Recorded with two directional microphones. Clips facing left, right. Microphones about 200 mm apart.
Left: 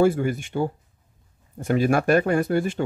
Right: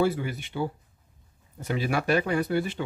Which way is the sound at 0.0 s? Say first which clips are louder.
Left 6 dB; 50° left (ahead or behind).